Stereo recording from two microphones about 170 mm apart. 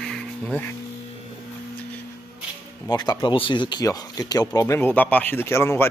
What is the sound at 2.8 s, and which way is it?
Speech, 25° left (ahead or behind).